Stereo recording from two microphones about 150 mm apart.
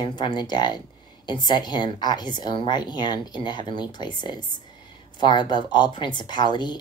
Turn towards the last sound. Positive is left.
turn(degrees=30)  # may be behind; listen again after turning